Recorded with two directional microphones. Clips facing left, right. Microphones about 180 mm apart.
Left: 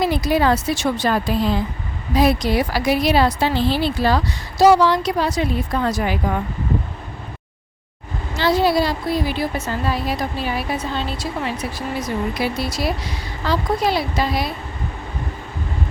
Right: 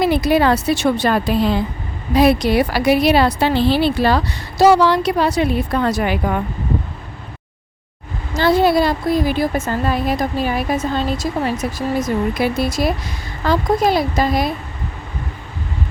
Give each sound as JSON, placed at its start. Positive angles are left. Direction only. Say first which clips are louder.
{"t": 0.0, "sound": "speech", "louder": "right 3 dB", "side_deg": -65}
{"t": 8.3, "sound": "a woman's voice", "louder": "right 3 dB", "side_deg": -50}